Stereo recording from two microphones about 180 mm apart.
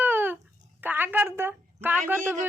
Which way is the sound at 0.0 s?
10° right (ahead or behind).